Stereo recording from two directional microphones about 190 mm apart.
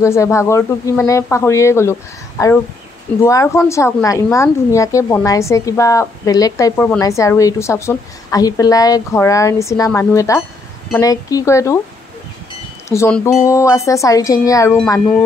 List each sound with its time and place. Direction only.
0.0 s speech: 15° left (ahead or behind)
12.8 s speech: 15° left (ahead or behind)